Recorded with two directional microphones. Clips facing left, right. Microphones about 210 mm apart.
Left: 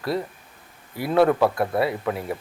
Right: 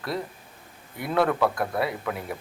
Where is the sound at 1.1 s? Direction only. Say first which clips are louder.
Left 5 dB; 25° left (ahead or behind).